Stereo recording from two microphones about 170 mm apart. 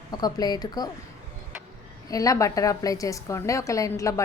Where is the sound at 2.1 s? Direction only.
20° left (ahead or behind).